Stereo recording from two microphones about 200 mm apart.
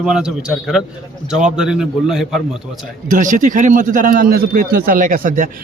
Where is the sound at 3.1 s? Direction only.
40° right (ahead or behind).